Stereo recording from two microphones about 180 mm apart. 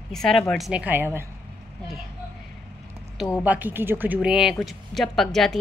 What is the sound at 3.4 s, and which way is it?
A woman's voice, 10° right (ahead or behind).